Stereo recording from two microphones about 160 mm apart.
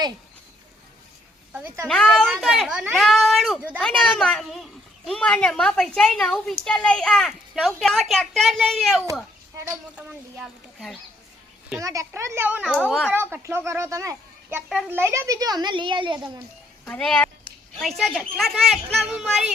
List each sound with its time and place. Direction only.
1.5 s a child's voice: 15° right (ahead or behind)
1.9 s a woman's voice: 5° left (ahead or behind)
11.8 s a child's voice: 20° right (ahead or behind)
12.6 s a woman's voice: centre (ahead or behind)
13.1 s a child's voice: 15° right (ahead or behind)
16.8 s a woman's voice: 5° left (ahead or behind)